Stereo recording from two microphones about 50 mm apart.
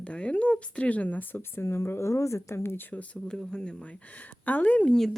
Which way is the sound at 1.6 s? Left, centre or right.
Left.